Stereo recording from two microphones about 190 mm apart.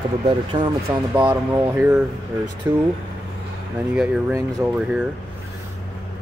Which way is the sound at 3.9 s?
10° right (ahead or behind).